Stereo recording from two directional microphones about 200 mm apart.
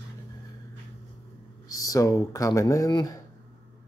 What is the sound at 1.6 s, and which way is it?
Speech, 15° left (ahead or behind).